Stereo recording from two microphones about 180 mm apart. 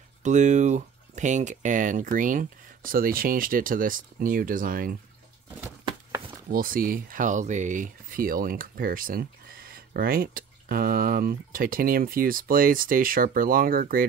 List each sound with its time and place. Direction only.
0.2 s speech: 40° right (ahead or behind)
6.5 s speech: 50° right (ahead or behind)